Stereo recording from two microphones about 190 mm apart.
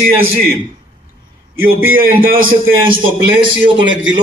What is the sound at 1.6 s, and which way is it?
A man's voice, 50° right (ahead or behind).